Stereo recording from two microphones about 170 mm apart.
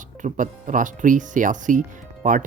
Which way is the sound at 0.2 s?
50° right (ahead or behind).